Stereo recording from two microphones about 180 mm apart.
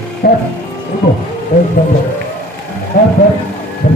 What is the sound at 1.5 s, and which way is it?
Speech, 55° left (ahead or behind).